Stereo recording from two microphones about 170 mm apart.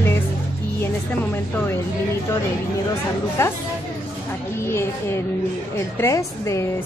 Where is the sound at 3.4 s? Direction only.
15° left (ahead or behind).